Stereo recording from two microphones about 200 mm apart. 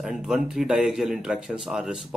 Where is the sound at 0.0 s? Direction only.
Centre (ahead or behind).